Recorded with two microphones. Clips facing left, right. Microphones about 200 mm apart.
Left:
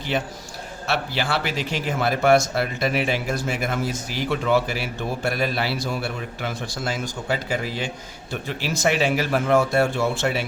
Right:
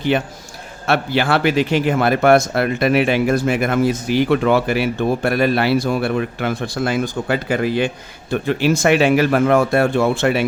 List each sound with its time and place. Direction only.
0.1 s speech: 55° right (ahead or behind)